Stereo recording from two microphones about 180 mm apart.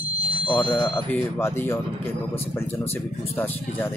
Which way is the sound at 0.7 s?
25° left (ahead or behind).